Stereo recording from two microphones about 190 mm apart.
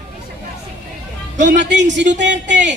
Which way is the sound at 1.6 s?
65° right (ahead or behind).